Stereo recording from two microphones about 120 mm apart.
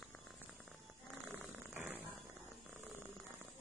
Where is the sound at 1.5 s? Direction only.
10° right (ahead or behind).